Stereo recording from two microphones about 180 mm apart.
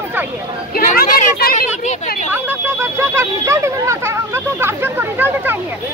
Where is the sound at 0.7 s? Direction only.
50° left (ahead or behind).